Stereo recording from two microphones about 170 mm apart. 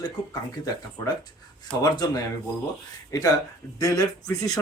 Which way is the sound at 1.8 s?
20° left (ahead or behind).